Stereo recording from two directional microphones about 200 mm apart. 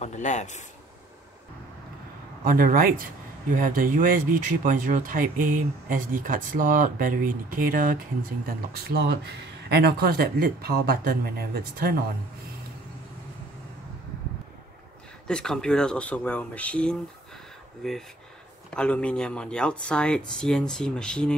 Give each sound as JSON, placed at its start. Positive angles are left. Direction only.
{"t": 0.0, "sound": "a man's voice", "side_deg": 35}
{"t": 2.4, "sound": "speech", "side_deg": -45}
{"t": 15.2, "sound": "speech", "side_deg": 5}